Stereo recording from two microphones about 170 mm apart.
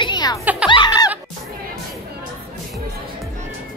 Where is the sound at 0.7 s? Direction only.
25° left (ahead or behind).